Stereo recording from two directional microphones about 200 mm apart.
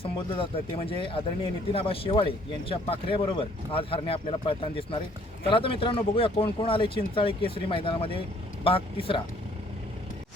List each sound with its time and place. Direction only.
0.0 s speech: 25° left (ahead or behind)